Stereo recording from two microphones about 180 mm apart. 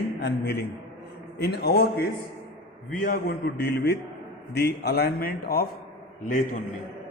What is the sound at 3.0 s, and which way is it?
A man's voice, 60° left (ahead or behind).